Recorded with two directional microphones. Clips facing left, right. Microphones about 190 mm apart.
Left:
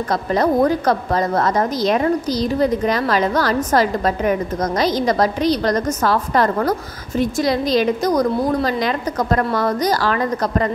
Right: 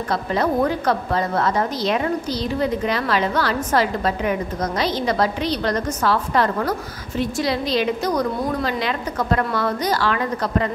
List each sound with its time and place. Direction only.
0.1 s a woman's voice: 40° left (ahead or behind)